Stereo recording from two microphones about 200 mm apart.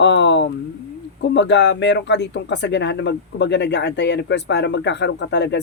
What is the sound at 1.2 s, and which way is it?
Speech, 60° left (ahead or behind).